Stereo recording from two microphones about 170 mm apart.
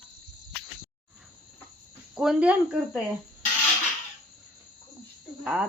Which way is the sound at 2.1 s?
5° right (ahead or behind).